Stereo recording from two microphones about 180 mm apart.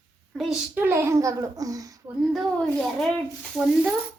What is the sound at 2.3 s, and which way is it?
Speech, centre (ahead or behind).